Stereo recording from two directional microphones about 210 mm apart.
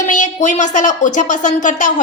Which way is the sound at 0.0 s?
35° left (ahead or behind).